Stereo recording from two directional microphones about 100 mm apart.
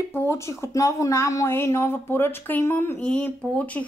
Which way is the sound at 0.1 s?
25° left (ahead or behind).